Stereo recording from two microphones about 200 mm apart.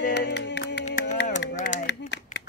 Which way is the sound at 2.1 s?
60° left (ahead or behind).